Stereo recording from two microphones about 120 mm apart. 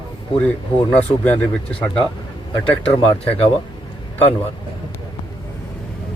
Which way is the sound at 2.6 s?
50° left (ahead or behind).